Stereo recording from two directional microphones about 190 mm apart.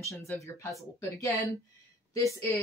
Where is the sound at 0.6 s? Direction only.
15° left (ahead or behind).